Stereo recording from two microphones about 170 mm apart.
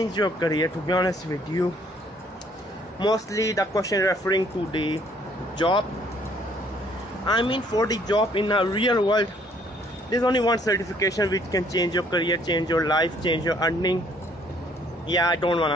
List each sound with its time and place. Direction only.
0.0 s speech: 25° left (ahead or behind)
3.0 s speech: 20° left (ahead or behind)
7.2 s speech: 25° left (ahead or behind)
15.0 s speech: 25° left (ahead or behind)